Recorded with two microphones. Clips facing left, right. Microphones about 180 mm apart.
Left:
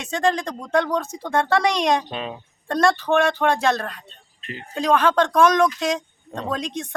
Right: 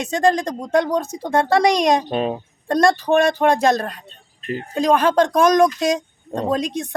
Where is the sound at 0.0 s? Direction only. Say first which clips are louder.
Right 4 dB; 40° right (ahead or behind).